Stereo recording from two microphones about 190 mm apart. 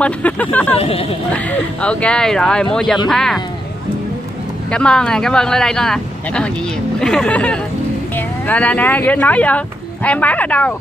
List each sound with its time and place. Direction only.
0.0 s speech: 10° left (ahead or behind)
0.7 s speech: 30° left (ahead or behind)
1.3 s speech: 5° left (ahead or behind)
4.6 s speech: 5° left (ahead or behind)